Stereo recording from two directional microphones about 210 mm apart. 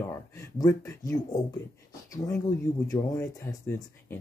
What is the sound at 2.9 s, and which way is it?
Speech, 15° left (ahead or behind).